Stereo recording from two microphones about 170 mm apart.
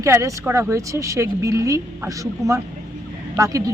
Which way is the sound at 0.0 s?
15° right (ahead or behind).